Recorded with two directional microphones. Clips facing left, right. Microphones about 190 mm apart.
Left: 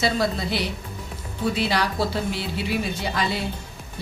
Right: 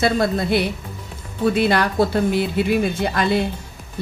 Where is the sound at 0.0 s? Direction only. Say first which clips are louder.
Right 5 dB; 55° right (ahead or behind).